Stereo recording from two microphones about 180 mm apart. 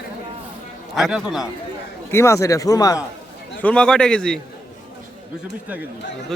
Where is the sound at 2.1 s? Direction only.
15° left (ahead or behind).